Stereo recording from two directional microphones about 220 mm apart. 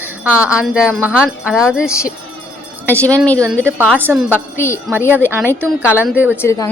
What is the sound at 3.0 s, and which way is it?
Speech, 5° left (ahead or behind).